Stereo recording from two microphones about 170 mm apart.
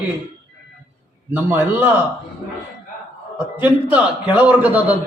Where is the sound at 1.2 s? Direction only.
10° right (ahead or behind).